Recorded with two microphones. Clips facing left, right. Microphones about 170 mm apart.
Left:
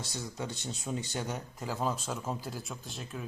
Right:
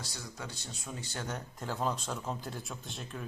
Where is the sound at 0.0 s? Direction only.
20° left (ahead or behind).